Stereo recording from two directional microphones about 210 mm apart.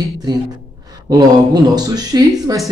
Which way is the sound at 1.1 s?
20° right (ahead or behind).